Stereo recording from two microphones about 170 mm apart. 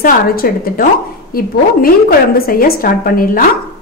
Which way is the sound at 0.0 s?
55° left (ahead or behind).